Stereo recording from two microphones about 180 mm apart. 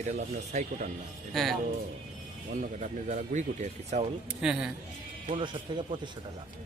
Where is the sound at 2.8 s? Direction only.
40° right (ahead or behind).